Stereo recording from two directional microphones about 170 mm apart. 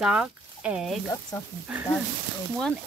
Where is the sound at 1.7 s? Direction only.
10° right (ahead or behind).